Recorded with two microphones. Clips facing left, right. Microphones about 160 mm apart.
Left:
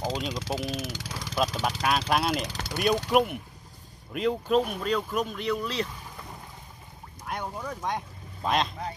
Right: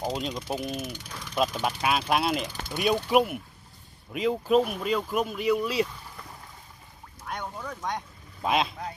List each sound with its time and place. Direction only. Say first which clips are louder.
0.3 s speech: even; 90° left
1.3 s speech: right 1 dB; centre (ahead or behind)
2.4 s speech: left 1 dB; 80° left
2.7 s speech: right 1 dB; centre (ahead or behind)
7.2 s boat: left 2 dB; 10° left (ahead or behind)
8.4 s speech: right 1 dB; 5° right (ahead or behind)